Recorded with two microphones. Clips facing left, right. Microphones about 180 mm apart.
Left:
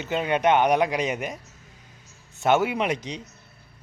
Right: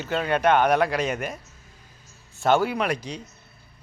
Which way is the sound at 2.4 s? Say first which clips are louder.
Even; 20° left (ahead or behind).